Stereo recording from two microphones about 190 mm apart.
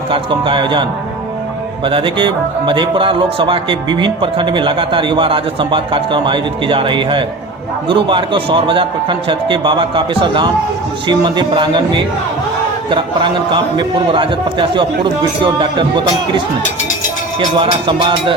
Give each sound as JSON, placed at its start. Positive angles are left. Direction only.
{"t": 0.1, "sound": "speech", "side_deg": -25}
{"t": 17.6, "sound": "speech", "side_deg": -25}